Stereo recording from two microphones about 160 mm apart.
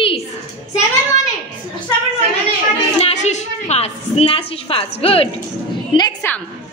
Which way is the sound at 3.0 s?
45° left (ahead or behind).